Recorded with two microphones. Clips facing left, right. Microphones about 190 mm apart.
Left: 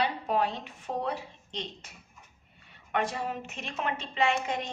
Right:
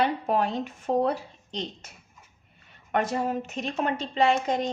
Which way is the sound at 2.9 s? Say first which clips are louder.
Right 5 dB; 45° right (ahead or behind).